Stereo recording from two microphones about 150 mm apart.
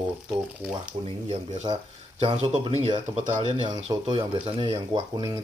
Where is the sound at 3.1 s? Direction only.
55° right (ahead or behind).